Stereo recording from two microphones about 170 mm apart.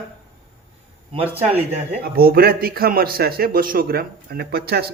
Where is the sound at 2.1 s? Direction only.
60° right (ahead or behind).